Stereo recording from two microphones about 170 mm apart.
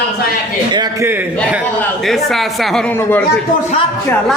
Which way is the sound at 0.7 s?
25° right (ahead or behind).